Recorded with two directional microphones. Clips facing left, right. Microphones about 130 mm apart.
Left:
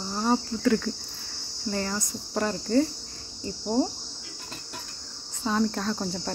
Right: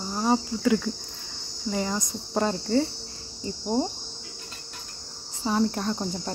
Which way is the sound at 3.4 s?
15° right (ahead or behind).